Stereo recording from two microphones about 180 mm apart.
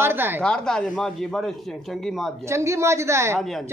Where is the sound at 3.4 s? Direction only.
Centre (ahead or behind).